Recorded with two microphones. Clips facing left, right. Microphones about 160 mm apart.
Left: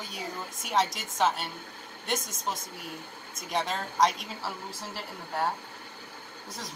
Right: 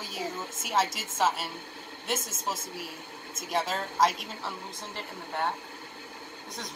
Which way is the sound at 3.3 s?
5° right (ahead or behind).